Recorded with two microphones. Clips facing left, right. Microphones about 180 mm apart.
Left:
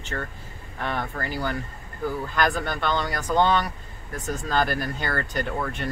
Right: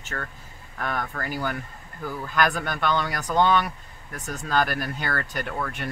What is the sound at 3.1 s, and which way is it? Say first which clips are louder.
Speech: left 1 dB; centre (ahead or behind).